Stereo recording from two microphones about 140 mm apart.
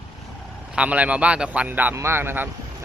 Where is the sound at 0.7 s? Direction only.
10° right (ahead or behind).